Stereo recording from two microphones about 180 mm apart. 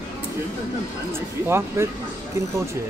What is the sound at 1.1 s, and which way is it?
Speech, 15° right (ahead or behind).